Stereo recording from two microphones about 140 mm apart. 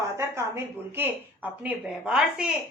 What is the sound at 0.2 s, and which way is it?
A woman's voice, 20° right (ahead or behind).